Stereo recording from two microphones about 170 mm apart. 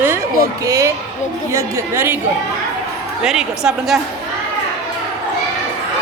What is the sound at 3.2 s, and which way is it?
Speech, 5° right (ahead or behind).